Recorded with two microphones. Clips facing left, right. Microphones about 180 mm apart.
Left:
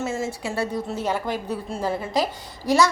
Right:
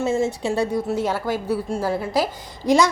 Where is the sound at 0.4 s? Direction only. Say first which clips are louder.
Right 5 dB; 15° right (ahead or behind).